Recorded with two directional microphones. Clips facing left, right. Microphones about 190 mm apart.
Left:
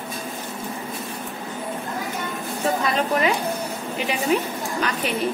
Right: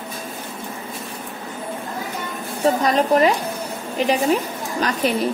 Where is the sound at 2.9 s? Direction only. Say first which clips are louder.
Right 6 dB; 40° right (ahead or behind).